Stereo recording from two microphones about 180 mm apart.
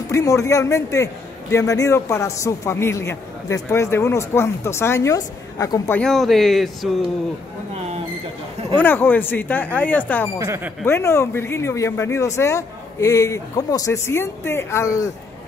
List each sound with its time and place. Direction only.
0.1 s a man's voice: 15° left (ahead or behind)
5.9 s a man's voice: centre (ahead or behind)
8.7 s a man's voice: 10° left (ahead or behind)
10.4 s speech: 15° right (ahead or behind)
10.9 s a man's voice: 15° left (ahead or behind)